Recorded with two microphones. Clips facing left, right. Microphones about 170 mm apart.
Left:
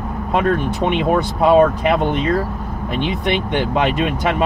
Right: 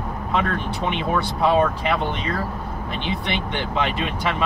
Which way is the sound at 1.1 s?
55° left (ahead or behind).